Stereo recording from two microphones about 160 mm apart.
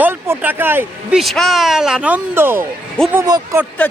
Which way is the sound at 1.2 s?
Centre (ahead or behind).